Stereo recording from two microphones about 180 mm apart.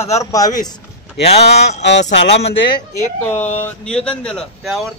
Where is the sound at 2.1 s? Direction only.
75° left (ahead or behind).